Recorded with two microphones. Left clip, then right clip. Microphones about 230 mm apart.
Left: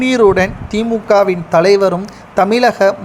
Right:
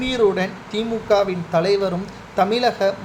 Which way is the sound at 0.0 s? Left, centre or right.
Left.